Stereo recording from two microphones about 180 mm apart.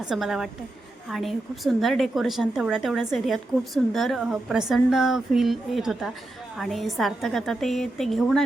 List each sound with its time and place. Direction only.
0.0 s a woman's voice: 5° right (ahead or behind)